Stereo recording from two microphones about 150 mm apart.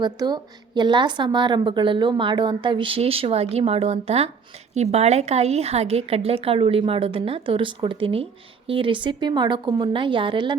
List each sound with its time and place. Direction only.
0.0 s a woman's voice: 30° right (ahead or behind)